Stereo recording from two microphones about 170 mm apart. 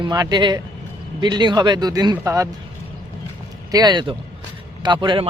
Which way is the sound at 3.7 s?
25° right (ahead or behind).